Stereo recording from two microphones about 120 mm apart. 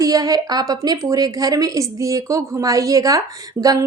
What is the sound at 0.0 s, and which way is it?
A woman's voice, 30° right (ahead or behind).